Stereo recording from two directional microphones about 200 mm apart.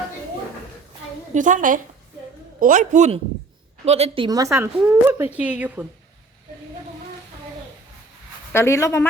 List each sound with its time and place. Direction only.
1.3 s a man's voice: 40° right (ahead or behind); by 5.8 s 5° right (ahead or behind)
8.5 s speech: 15° left (ahead or behind)